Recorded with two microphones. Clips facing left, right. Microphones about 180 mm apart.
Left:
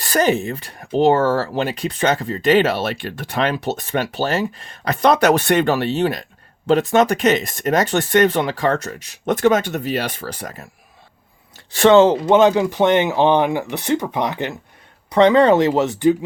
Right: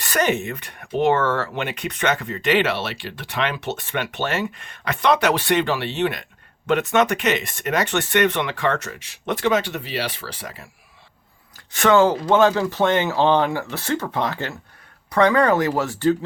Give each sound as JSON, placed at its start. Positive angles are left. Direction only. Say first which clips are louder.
{"t": 0.0, "sound": "speech", "louder": "left 4 dB", "side_deg": 35}
{"t": 11.5, "sound": "speech", "louder": "left 5 dB", "side_deg": 30}